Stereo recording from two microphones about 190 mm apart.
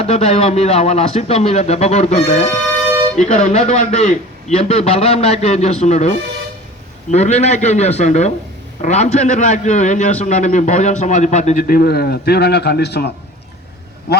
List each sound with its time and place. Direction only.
0.0 s a man's voice: 35° left (ahead or behind); by 13.1 s 60° left (ahead or behind)